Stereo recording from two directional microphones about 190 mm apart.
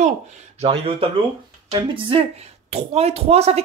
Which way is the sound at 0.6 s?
30° right (ahead or behind).